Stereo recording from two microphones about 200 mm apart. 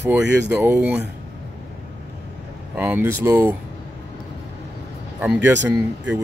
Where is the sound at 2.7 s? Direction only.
10° right (ahead or behind).